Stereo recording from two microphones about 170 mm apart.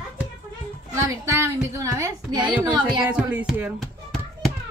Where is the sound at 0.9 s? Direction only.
15° right (ahead or behind).